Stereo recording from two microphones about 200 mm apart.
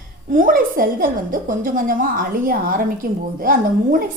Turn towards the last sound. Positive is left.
turn(degrees=-45)  # may be behind; listen again after turning